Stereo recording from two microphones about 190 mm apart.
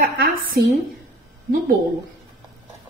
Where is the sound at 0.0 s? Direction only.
55° right (ahead or behind).